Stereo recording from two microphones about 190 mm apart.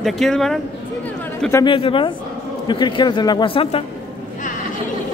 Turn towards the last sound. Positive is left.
turn(degrees=30)  # may be behind; listen again after turning